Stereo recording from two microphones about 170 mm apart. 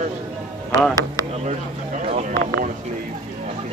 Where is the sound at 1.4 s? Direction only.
40° right (ahead or behind).